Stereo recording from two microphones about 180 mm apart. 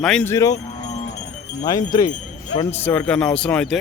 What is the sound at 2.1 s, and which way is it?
Jingle bell, 40° left (ahead or behind).